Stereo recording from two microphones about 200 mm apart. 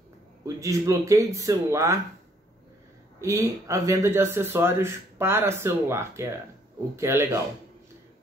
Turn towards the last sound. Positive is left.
turn(degrees=-15)  # may be behind; listen again after turning